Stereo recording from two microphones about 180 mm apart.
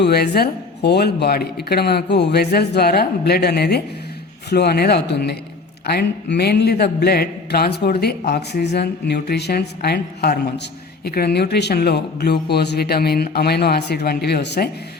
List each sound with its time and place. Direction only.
0.0 s a man's voice: 60° left (ahead or behind)